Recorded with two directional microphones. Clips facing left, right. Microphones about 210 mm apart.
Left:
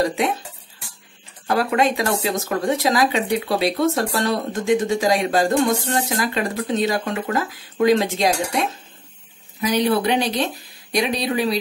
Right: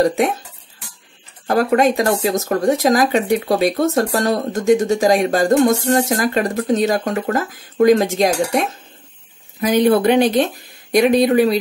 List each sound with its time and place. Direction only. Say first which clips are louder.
0.0 s speech: right 5 dB; 45° right (ahead or behind)
1.5 s speech: right 4 dB; 45° right (ahead or behind)